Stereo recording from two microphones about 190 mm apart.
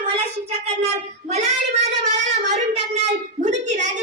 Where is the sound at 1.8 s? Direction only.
40° right (ahead or behind).